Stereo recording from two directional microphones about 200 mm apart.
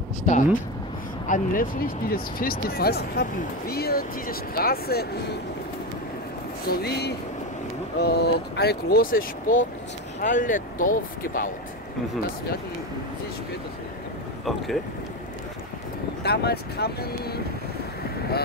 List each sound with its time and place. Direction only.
0.2 s speech: 40° left (ahead or behind)
6.7 s speech: 55° left (ahead or behind)
16.2 s speech: 55° left (ahead or behind)